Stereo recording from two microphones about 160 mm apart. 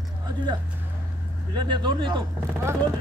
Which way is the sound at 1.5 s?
30° right (ahead or behind).